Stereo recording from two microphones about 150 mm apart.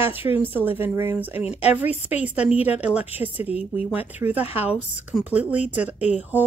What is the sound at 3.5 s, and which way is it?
Speech, 40° left (ahead or behind).